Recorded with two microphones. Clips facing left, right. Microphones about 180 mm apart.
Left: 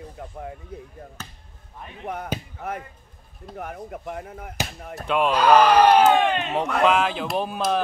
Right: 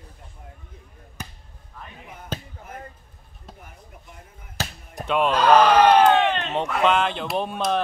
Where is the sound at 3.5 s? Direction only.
75° left (ahead or behind).